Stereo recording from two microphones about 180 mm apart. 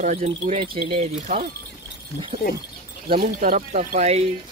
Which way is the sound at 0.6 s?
30° right (ahead or behind).